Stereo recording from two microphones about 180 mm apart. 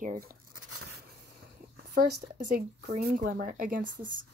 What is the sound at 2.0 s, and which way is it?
Speech, 50° right (ahead or behind).